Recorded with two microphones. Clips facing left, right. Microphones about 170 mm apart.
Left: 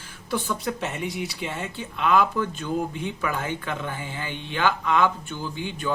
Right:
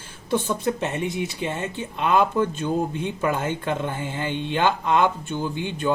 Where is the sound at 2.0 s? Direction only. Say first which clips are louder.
Right 2 dB; 25° right (ahead or behind).